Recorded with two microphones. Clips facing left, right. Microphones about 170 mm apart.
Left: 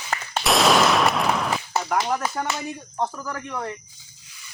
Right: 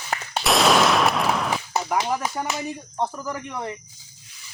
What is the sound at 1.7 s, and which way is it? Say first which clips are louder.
Speech: even; 10° right (ahead or behind).